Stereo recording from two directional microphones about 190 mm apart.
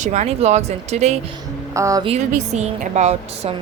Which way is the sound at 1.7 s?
15° right (ahead or behind).